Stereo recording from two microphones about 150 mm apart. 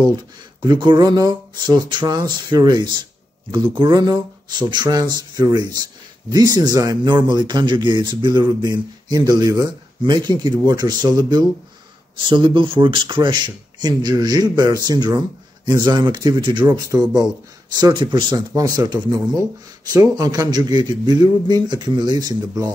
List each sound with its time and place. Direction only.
0.0 s speech: 25° right (ahead or behind)